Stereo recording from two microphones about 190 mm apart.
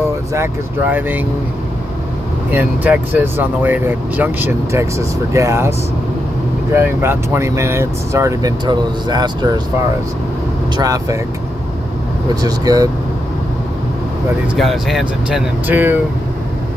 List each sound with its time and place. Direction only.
0.3 s speech: 10° right (ahead or behind)
2.5 s speech: 10° right (ahead or behind)
10.8 s speech: 20° right (ahead or behind)
12.4 s speech: 20° right (ahead or behind)
14.5 s speech: centre (ahead or behind)